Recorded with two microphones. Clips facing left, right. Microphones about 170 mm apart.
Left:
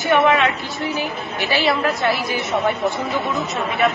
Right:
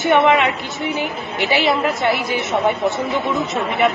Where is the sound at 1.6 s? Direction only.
20° right (ahead or behind).